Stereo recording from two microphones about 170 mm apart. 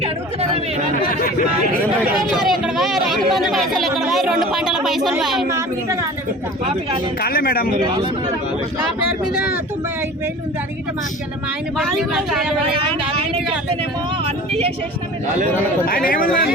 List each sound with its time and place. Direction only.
1.0 s speech: 55° left (ahead or behind)
2.3 s a sound: centre (ahead or behind)
3.2 s speech: centre (ahead or behind)
5.5 s a woman's voice: 15° right (ahead or behind)
7.2 s speech: 65° left (ahead or behind)
11.8 s speech: centre (ahead or behind)